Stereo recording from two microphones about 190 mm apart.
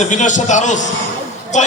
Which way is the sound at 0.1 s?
40° left (ahead or behind).